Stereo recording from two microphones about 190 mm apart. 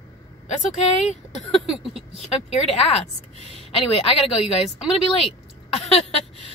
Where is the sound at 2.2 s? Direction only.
35° left (ahead or behind).